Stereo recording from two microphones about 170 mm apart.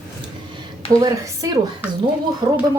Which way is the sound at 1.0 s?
20° right (ahead or behind).